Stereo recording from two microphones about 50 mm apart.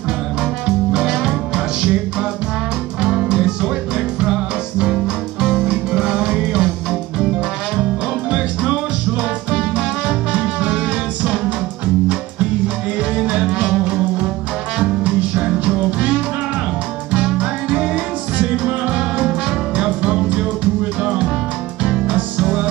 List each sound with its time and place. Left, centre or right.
0.4 s music: centre
10.3 s music: right
12.1 s music: right